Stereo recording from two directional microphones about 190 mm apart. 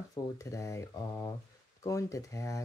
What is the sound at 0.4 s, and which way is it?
Speech, 15° left (ahead or behind).